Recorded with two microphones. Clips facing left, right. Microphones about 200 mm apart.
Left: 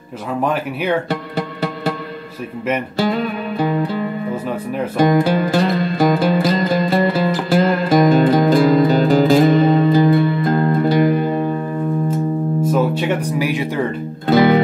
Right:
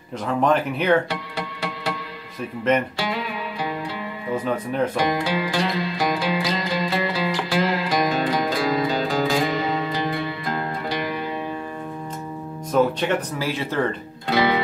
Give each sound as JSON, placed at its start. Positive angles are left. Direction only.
{"t": 0.3, "sound": "speech", "side_deg": 10}
{"t": 1.3, "sound": "music", "side_deg": 55}
{"t": 3.0, "sound": "music", "side_deg": 55}
{"t": 4.9, "sound": "music", "side_deg": 50}
{"t": 13.1, "sound": "speech", "side_deg": 15}
{"t": 14.2, "sound": "music", "side_deg": 50}